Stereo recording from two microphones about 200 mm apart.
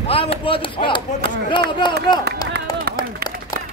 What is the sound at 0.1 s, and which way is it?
Speech, 30° left (ahead or behind).